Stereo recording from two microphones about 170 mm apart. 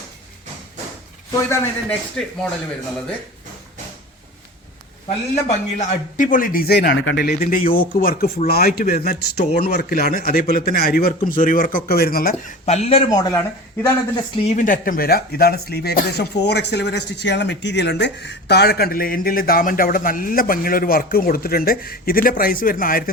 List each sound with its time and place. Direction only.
1.5 s a man's voice: 5° left (ahead or behind)
5.0 s speech: 50° left (ahead or behind)
12.6 s speech: 40° left (ahead or behind); by 13.4 s 25° left (ahead or behind)
14.5 s speech: 50° left (ahead or behind)